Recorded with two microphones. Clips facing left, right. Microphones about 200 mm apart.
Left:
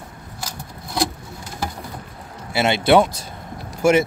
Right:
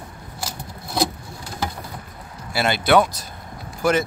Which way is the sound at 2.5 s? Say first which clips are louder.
Left 2 dB; 25° left (ahead or behind).